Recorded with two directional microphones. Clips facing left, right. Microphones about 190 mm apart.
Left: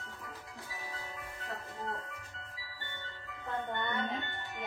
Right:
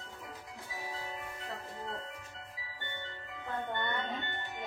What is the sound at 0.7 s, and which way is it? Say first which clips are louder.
Music: right 4 dB; 20° right (ahead or behind).